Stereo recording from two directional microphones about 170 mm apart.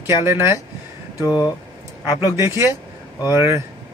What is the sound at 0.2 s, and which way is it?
Speech, 15° right (ahead or behind).